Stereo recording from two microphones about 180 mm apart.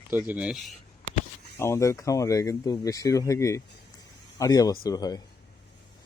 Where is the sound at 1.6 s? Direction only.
15° left (ahead or behind).